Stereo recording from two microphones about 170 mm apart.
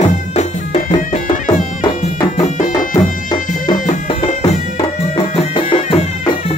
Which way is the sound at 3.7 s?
45° left (ahead or behind).